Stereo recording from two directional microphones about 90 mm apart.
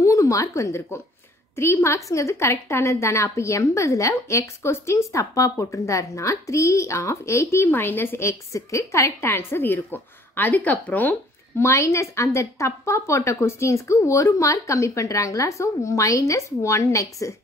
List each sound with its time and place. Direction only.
0.0 s a woman's voice: 35° left (ahead or behind)
9.3 s speech: 25° left (ahead or behind)
11.6 s a woman's voice: 35° left (ahead or behind)